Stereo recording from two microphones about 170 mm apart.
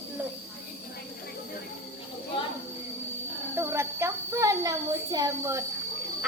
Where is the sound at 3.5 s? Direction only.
15° right (ahead or behind).